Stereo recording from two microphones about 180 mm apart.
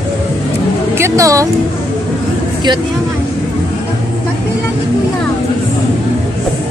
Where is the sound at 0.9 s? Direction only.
15° right (ahead or behind).